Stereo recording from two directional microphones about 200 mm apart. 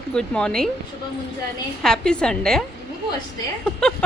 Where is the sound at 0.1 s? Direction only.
5° left (ahead or behind).